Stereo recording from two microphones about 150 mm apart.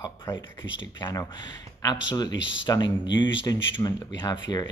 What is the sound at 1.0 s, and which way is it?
Speech, 20° left (ahead or behind).